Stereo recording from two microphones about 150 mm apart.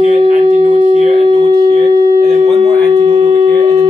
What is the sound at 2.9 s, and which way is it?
Wind instrument, 35° right (ahead or behind).